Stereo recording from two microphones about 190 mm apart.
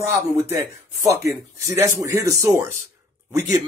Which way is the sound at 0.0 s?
10° right (ahead or behind).